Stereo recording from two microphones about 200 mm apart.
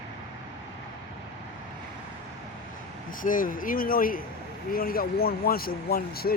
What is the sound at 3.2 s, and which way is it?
Speech, 45° left (ahead or behind).